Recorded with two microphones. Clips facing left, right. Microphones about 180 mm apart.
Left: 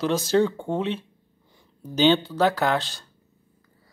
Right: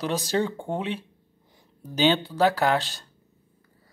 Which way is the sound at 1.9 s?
10° right (ahead or behind).